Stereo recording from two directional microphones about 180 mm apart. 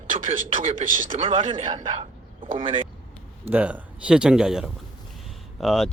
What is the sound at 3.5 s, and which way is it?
Speech, 5° right (ahead or behind).